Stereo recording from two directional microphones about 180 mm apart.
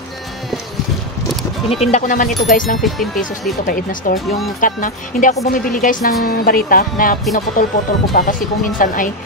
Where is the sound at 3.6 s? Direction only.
50° left (ahead or behind).